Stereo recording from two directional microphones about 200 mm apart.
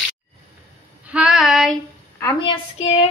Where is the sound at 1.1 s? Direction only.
5° right (ahead or behind).